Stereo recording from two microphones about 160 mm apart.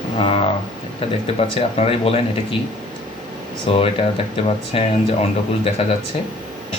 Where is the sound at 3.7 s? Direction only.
35° left (ahead or behind).